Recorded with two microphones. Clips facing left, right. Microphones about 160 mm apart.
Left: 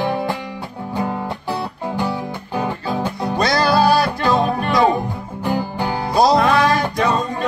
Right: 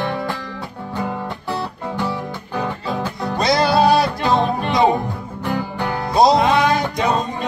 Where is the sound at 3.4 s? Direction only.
25° right (ahead or behind).